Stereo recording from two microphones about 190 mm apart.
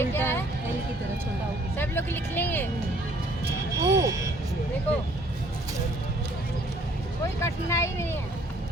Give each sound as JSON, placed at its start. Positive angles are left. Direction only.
{"t": 0.0, "sound": "music", "side_deg": 10}
{"t": 1.7, "sound": "speech", "side_deg": 10}
{"t": 3.8, "sound": "speech", "side_deg": -15}
{"t": 7.4, "sound": "speech", "side_deg": 15}